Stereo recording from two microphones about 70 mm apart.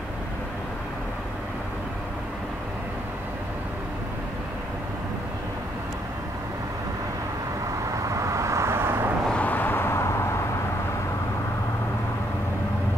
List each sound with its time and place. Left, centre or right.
7.9 s vehicle: right
9.3 s vehicle: left